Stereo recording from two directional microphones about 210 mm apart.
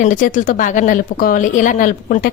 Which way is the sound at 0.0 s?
35° left (ahead or behind).